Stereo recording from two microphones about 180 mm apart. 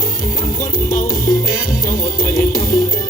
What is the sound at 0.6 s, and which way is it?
Music, 50° left (ahead or behind).